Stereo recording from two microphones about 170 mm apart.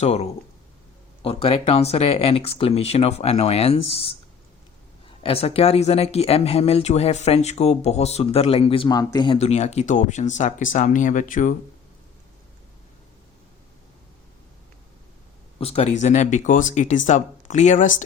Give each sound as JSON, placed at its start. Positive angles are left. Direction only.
{"t": 0.0, "sound": "speech", "side_deg": 40}
{"t": 15.5, "sound": "speech", "side_deg": 35}